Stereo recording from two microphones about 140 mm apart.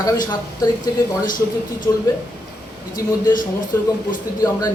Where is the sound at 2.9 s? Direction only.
30° left (ahead or behind).